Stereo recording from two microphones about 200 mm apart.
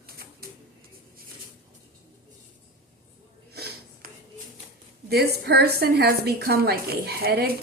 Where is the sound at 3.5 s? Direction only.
55° right (ahead or behind).